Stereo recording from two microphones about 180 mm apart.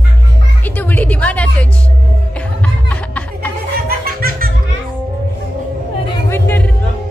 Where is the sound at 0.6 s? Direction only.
10° left (ahead or behind).